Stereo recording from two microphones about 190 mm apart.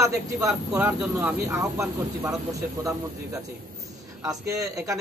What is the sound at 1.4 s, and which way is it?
Speech, 15° right (ahead or behind).